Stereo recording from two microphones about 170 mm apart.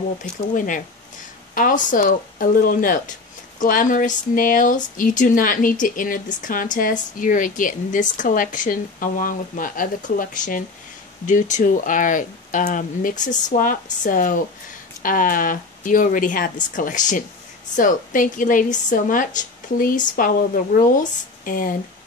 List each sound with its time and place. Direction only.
0.2 s speech: 50° left (ahead or behind)